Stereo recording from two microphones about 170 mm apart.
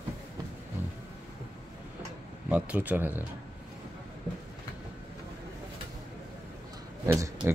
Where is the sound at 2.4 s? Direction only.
5° right (ahead or behind).